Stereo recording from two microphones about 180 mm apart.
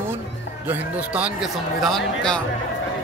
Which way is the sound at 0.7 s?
10° right (ahead or behind).